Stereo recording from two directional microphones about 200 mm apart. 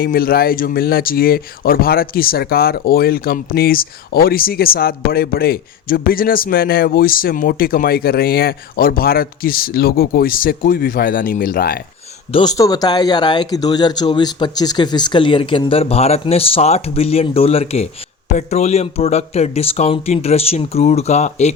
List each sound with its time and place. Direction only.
0.0 s speech: 50° left (ahead or behind)
12.3 s speech: 20° left (ahead or behind)